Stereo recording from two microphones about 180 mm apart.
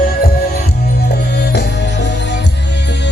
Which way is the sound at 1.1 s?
70° left (ahead or behind).